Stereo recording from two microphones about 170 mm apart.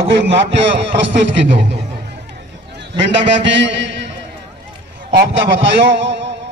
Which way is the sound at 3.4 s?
90° right.